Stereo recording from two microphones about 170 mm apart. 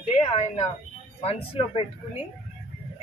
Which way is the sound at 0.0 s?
40° left (ahead or behind).